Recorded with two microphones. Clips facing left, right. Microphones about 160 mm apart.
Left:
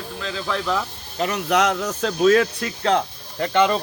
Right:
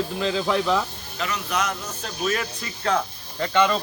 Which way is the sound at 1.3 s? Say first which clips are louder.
Left 7 dB; 80° left.